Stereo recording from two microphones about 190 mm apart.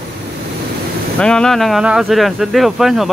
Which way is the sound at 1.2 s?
5° left (ahead or behind).